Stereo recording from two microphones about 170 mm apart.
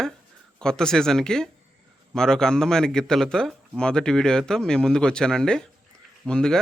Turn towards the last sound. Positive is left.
turn(degrees=5)  # may be behind; listen again after turning